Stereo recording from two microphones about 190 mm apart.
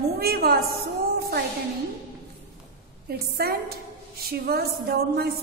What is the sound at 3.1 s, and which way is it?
A woman's voice, 55° right (ahead or behind).